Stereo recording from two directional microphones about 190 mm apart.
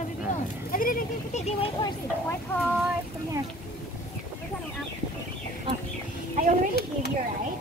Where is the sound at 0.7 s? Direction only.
45° left (ahead or behind).